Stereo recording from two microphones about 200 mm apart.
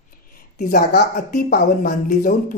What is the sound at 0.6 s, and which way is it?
A woman's voice, 45° left (ahead or behind).